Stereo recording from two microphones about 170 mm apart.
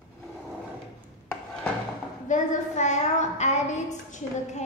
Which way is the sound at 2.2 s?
45° left (ahead or behind).